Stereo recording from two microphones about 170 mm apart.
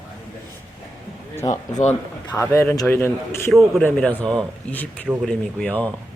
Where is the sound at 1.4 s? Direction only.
20° left (ahead or behind).